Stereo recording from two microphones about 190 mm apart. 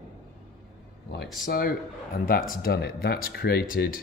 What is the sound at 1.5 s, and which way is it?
Speech, 50° left (ahead or behind).